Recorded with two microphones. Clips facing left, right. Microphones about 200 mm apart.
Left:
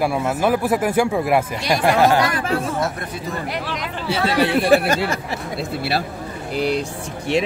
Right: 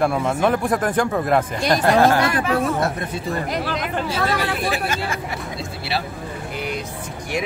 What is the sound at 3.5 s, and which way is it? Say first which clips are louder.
Speech: right 2 dB; 45° right (ahead or behind).